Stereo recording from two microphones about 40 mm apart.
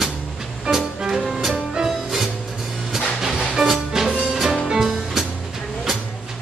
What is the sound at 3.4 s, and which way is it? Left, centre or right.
Music, centre.